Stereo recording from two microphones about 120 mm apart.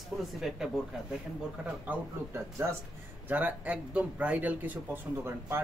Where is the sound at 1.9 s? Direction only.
20° right (ahead or behind).